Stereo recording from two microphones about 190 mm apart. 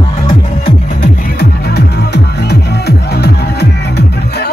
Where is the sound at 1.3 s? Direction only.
60° left (ahead or behind).